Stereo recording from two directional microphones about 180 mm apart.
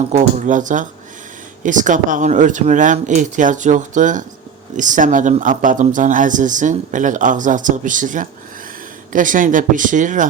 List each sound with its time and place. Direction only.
0.1 s speech: 45° right (ahead or behind)